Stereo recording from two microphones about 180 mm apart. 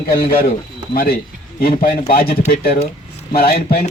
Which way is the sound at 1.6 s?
55° left (ahead or behind).